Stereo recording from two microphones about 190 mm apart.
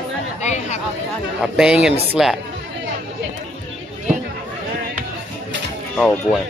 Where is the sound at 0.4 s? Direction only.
40° left (ahead or behind).